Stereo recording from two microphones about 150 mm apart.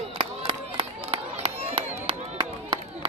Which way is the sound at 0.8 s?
45° right (ahead or behind).